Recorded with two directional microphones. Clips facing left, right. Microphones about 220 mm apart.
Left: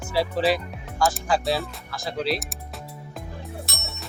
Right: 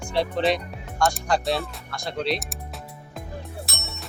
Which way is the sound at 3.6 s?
Centre (ahead or behind).